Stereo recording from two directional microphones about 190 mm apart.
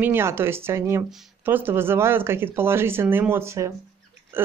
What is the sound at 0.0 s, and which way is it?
Speech, 10° right (ahead or behind).